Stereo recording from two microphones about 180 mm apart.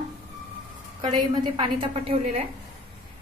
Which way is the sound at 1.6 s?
30° right (ahead or behind).